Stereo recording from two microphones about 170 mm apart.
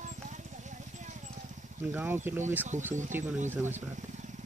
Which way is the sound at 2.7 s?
45° right (ahead or behind).